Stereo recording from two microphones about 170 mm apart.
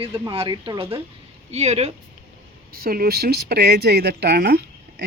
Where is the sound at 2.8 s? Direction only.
60° right (ahead or behind).